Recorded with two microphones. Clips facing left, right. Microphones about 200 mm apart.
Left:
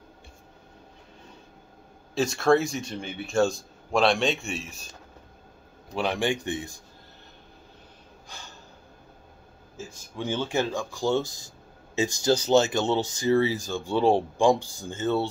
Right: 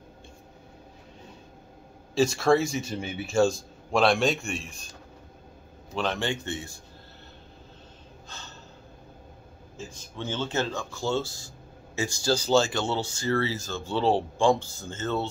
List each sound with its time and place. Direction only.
2.1 s speech: centre (ahead or behind)
5.9 s speech: 15° left (ahead or behind)
8.3 s gasp: 15° left (ahead or behind)
10.1 s speech: 15° left (ahead or behind)